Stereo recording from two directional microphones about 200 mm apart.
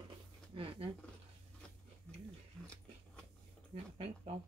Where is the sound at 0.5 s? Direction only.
25° right (ahead or behind).